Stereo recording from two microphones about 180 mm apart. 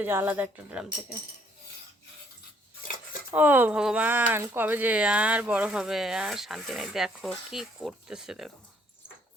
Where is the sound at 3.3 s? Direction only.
10° right (ahead or behind).